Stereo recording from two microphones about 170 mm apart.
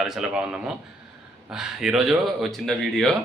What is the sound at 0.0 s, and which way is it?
A man's voice, 5° right (ahead or behind).